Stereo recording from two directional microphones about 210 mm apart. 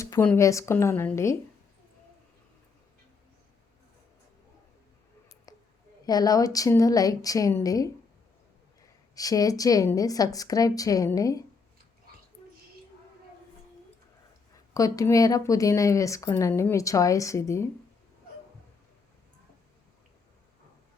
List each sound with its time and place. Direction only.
0.0 s speech: 10° left (ahead or behind)
5.5 s a sound: 15° left (ahead or behind)
6.1 s speech: 20° left (ahead or behind)
9.1 s speech: 15° left (ahead or behind)
14.7 s speech: 15° left (ahead or behind)